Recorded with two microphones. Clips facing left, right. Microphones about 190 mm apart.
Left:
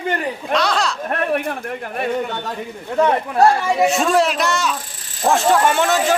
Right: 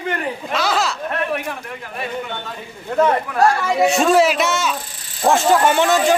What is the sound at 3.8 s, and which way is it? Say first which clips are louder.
A man's voice: right 3 dB; centre (ahead or behind).